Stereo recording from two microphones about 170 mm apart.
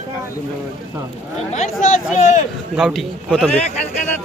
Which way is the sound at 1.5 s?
45° left (ahead or behind).